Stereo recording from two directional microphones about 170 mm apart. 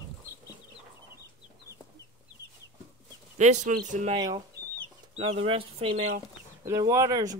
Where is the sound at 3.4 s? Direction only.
45° right (ahead or behind).